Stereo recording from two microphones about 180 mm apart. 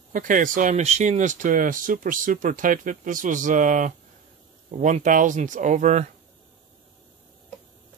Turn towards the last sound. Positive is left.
turn(degrees=-40)  # may be behind; listen again after turning